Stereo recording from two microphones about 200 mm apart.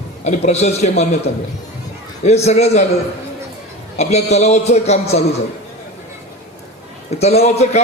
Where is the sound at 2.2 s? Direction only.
35° left (ahead or behind).